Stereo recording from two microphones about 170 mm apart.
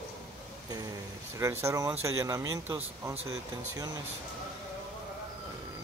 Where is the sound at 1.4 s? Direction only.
15° right (ahead or behind).